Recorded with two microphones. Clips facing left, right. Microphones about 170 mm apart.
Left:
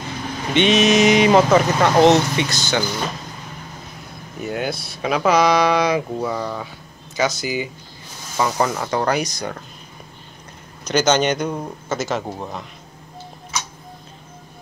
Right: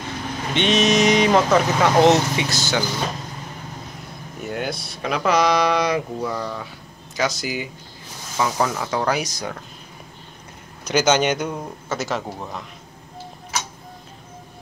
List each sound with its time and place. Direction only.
0.6 s speech: 5° left (ahead or behind)
4.5 s speech: 5° left (ahead or behind)
10.8 s speech: 10° right (ahead or behind)
12.3 s speech: 15° left (ahead or behind)